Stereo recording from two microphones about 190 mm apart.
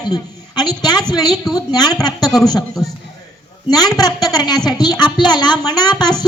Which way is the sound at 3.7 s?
20° left (ahead or behind).